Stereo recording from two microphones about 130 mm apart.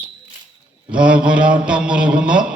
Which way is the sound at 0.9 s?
10° right (ahead or behind).